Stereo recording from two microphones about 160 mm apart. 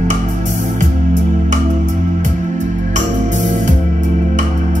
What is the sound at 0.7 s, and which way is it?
Music, 50° right (ahead or behind).